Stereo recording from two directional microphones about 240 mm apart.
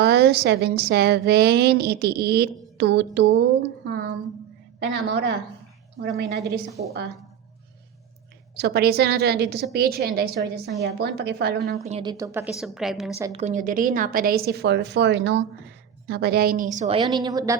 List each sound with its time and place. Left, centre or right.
0.0 s a woman's voice: right
8.5 s a woman's voice: right
11.8 s a woman's voice: right
12.1 s a woman's voice: centre
13.3 s a woman's voice: right
16.7 s a woman's voice: right
17.2 s a woman's voice: centre